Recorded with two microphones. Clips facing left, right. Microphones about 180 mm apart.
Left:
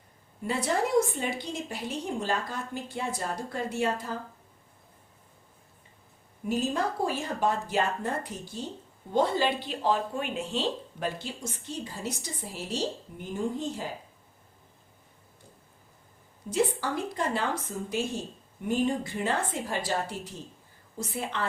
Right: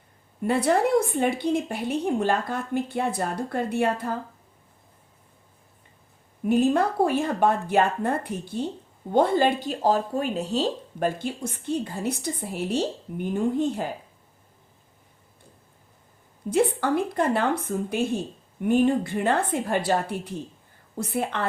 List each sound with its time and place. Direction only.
0.4 s speech: 60° right (ahead or behind)
6.4 s speech: 60° right (ahead or behind)
16.5 s speech: 55° right (ahead or behind)